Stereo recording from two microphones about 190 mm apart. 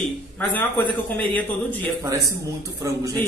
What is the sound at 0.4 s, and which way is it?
A woman's voice, 10° left (ahead or behind).